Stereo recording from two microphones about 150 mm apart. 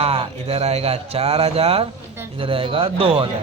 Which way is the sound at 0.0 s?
40° right (ahead or behind).